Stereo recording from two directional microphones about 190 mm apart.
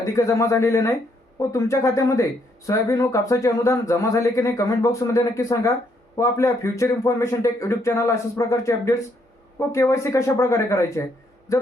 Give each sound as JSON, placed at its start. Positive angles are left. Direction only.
{"t": 0.0, "sound": "a man's voice", "side_deg": 15}